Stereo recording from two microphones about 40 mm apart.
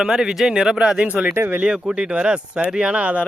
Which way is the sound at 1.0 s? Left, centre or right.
Right.